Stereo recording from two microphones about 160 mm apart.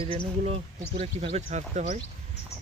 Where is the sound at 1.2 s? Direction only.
45° right (ahead or behind).